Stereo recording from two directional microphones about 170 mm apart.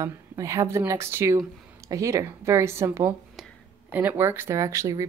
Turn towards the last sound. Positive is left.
turn(degrees=-20)  # may be behind; listen again after turning